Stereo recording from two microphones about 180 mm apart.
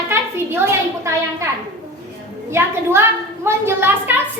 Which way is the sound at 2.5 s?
15° right (ahead or behind).